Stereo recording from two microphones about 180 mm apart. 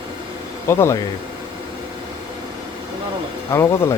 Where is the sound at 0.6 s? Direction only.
15° left (ahead or behind).